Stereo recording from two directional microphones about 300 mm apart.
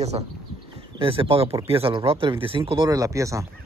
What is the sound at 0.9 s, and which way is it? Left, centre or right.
A man's voice, centre.